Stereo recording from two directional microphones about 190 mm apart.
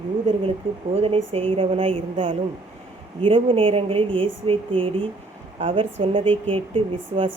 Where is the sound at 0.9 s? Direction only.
30° right (ahead or behind).